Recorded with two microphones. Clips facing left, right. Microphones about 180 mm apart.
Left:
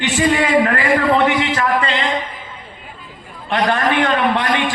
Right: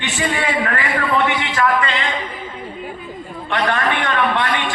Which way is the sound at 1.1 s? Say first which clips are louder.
Left 4 dB; 35° left (ahead or behind).